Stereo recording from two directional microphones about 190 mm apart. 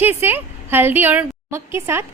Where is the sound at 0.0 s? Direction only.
10° right (ahead or behind).